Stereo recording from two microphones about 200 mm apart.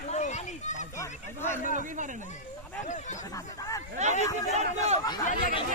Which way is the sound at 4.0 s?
35° right (ahead or behind).